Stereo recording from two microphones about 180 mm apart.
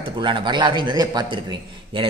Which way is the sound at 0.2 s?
25° right (ahead or behind).